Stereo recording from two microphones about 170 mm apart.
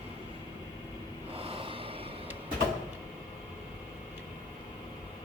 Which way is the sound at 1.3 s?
35° right (ahead or behind).